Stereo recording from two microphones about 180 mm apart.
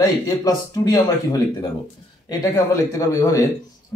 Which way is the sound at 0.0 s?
20° left (ahead or behind).